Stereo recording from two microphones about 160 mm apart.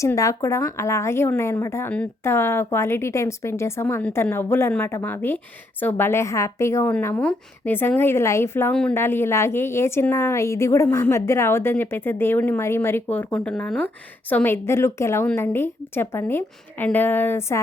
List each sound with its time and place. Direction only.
0.0 s a woman's voice: 20° left (ahead or behind)
8.7 s a woman's voice: 5° left (ahead or behind)